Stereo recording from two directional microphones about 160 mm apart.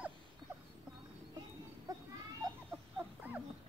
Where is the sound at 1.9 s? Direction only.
20° right (ahead or behind).